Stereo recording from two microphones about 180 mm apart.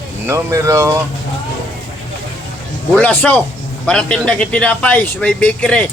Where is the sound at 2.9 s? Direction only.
10° left (ahead or behind).